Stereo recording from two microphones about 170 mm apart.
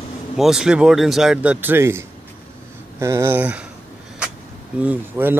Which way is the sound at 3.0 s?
15° right (ahead or behind).